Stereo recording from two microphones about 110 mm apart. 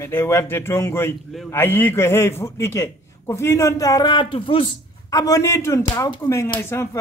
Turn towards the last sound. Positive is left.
turn(degrees=25)  # may be behind; listen again after turning